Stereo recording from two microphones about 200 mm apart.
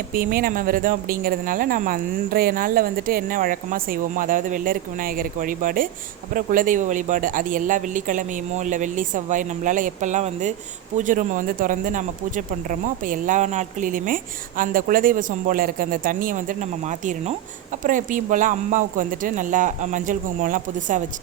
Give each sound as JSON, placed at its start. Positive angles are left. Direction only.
{"t": 0.1, "sound": "a woman's voice", "side_deg": -45}